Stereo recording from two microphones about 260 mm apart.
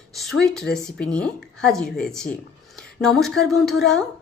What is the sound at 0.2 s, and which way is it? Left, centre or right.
A woman's voice, centre.